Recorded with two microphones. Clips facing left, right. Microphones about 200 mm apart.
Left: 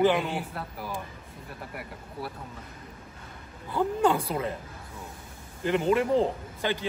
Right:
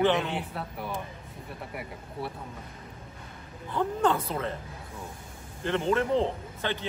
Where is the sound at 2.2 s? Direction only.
25° right (ahead or behind).